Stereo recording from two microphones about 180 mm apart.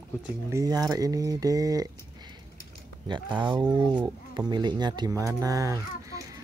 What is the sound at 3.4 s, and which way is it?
Speech, 25° right (ahead or behind).